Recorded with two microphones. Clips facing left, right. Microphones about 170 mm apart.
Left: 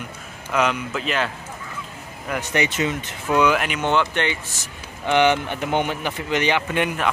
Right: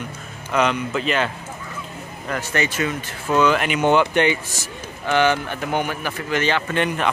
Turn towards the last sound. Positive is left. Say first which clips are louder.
# right 1 dB
turn(degrees=10)  # may be behind; listen again after turning